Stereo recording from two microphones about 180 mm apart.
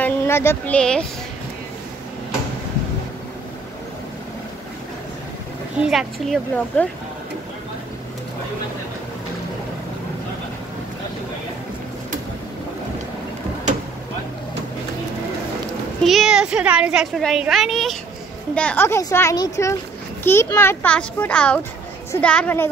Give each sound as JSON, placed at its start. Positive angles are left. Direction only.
{"t": 0.0, "sound": "speech", "side_deg": 15}
{"t": 5.9, "sound": "a child's voice", "side_deg": 0}
{"t": 16.0, "sound": "a child's voice", "side_deg": 0}